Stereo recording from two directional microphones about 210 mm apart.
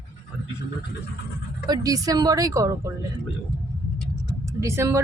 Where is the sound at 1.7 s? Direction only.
15° right (ahead or behind).